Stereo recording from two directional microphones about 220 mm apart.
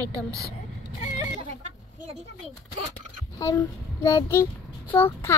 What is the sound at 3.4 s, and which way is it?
A child's voice, 15° left (ahead or behind).